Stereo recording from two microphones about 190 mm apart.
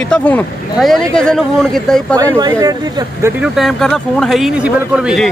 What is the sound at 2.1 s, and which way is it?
Speech, 20° right (ahead or behind).